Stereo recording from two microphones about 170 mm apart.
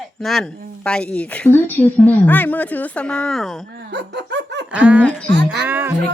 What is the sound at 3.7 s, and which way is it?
Dog, 80° right.